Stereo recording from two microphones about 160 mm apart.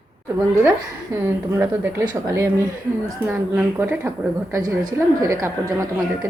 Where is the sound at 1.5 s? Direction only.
15° right (ahead or behind).